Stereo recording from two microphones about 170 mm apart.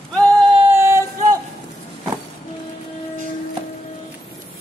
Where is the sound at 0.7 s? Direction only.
15° right (ahead or behind).